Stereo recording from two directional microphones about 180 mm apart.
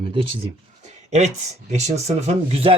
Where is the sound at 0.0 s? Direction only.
30° right (ahead or behind).